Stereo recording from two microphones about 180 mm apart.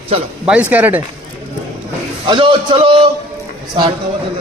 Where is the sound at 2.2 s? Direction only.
25° right (ahead or behind).